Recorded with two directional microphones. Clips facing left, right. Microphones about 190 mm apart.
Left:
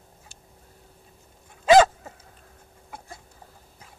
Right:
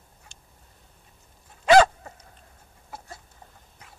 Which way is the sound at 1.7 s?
15° left (ahead or behind).